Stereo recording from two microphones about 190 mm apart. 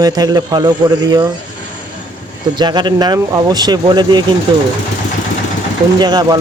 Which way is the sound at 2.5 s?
25° right (ahead or behind).